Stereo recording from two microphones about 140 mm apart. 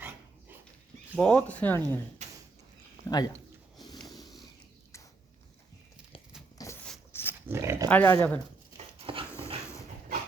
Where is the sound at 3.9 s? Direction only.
25° left (ahead or behind).